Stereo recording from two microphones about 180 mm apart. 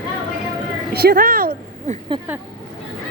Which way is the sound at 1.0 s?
55° right (ahead or behind).